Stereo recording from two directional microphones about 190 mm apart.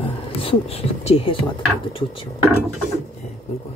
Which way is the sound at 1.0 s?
35° left (ahead or behind).